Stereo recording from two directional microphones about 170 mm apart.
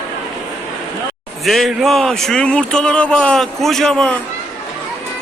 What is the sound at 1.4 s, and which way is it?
Speech, centre (ahead or behind).